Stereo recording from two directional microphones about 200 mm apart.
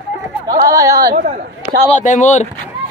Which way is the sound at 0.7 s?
15° right (ahead or behind).